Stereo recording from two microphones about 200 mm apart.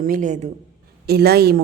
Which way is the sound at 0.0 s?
40° right (ahead or behind).